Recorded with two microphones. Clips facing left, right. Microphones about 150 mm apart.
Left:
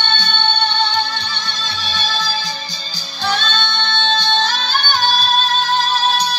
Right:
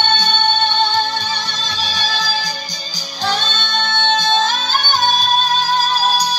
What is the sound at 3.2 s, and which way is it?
Music, 45° right (ahead or behind).